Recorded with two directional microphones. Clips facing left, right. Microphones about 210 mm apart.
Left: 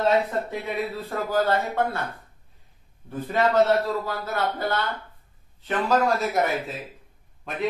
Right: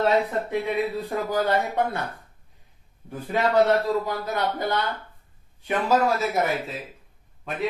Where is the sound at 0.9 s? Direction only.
15° right (ahead or behind).